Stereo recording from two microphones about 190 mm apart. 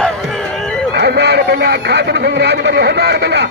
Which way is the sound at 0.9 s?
60° right (ahead or behind).